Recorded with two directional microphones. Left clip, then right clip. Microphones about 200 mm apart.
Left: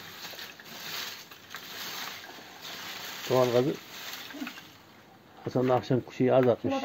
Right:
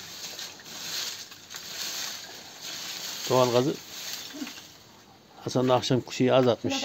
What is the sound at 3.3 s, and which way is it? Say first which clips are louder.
Speech: right 2 dB; 15° right (ahead or behind).